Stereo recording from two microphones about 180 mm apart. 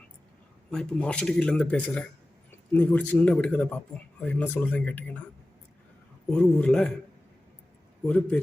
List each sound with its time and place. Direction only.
0.7 s speech: 5° left (ahead or behind)
6.3 s speech: 5° left (ahead or behind)
8.0 s speech: 5° left (ahead or behind)